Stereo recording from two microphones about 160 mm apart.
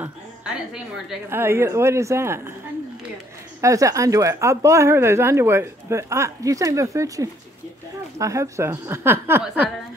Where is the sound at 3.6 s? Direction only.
20° right (ahead or behind).